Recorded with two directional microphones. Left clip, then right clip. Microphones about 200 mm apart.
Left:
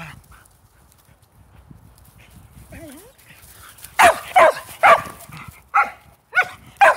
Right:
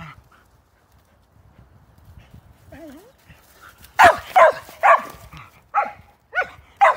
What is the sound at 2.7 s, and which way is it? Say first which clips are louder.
Dog: left 1 dB; 20° right (ahead or behind).